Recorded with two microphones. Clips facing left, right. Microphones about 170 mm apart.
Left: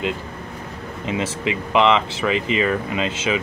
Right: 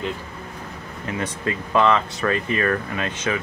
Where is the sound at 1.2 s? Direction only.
90° left.